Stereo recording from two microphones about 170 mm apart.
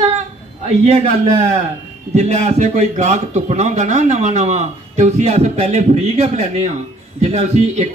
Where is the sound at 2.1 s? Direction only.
40° right (ahead or behind).